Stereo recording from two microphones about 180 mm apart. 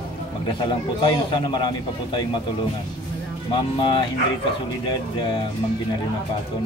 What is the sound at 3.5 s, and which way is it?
A man's voice, 25° left (ahead or behind).